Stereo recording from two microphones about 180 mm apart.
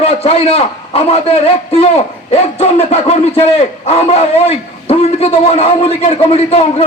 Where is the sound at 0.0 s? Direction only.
35° left (ahead or behind).